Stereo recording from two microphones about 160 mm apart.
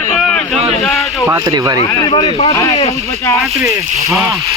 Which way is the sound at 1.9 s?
20° left (ahead or behind).